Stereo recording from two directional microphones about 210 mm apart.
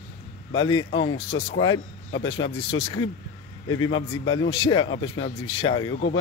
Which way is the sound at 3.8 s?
70° left (ahead or behind).